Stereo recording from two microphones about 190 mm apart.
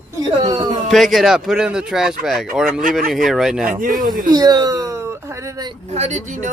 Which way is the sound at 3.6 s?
45° right (ahead or behind).